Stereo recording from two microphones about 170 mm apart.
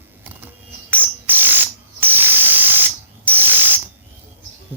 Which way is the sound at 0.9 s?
10° right (ahead or behind).